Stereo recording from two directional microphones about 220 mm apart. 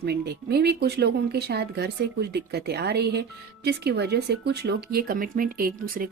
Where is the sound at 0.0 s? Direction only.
45° right (ahead or behind).